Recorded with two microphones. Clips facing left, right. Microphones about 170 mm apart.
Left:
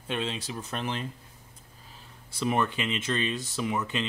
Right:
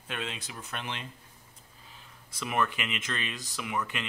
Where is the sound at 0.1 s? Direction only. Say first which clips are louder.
Left 6 dB; 30° left (ahead or behind).